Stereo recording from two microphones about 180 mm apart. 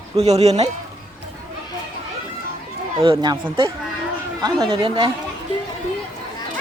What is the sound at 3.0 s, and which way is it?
A woman's voice, 25° right (ahead or behind).